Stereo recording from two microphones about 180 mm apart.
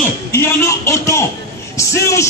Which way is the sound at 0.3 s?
15° left (ahead or behind).